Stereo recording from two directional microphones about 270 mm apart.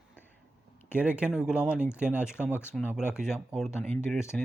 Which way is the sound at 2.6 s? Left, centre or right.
Centre.